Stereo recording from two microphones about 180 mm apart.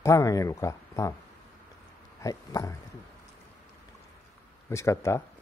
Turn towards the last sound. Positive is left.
turn(degrees=15)  # may be behind; listen again after turning